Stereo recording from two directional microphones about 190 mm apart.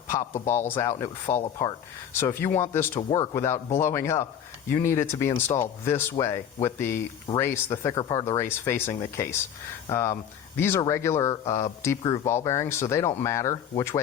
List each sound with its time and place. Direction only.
0.7 s speech: 15° left (ahead or behind)